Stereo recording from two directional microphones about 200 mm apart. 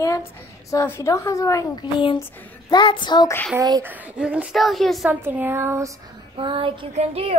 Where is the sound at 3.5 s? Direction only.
15° right (ahead or behind).